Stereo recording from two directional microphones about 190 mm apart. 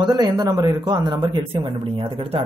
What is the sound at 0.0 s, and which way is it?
Speech, 20° right (ahead or behind).